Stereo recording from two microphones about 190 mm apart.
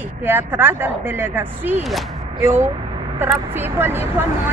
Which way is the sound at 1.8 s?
Centre (ahead or behind).